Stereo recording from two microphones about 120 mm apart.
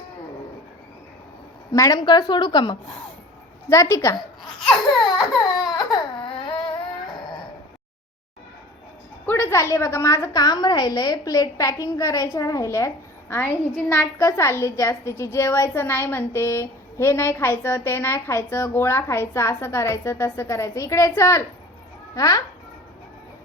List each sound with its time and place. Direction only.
1.7 s a woman's voice: 30° left (ahead or behind)
3.7 s a woman's voice: 25° left (ahead or behind)
4.9 s baby cry: centre (ahead or behind)
5.7 s baby cry: 40° left (ahead or behind)
9.2 s a woman's voice: 20° left (ahead or behind)